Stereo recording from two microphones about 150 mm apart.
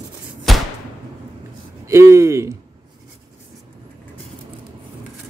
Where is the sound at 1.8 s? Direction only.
20° right (ahead or behind).